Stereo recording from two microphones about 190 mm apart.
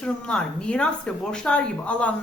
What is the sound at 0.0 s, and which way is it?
A woman's voice, 5° left (ahead or behind).